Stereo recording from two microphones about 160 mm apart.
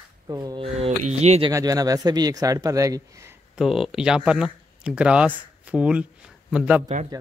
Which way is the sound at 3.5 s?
Centre (ahead or behind).